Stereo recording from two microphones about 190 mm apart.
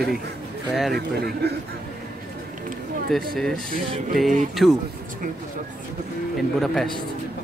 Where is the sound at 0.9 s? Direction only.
55° right (ahead or behind).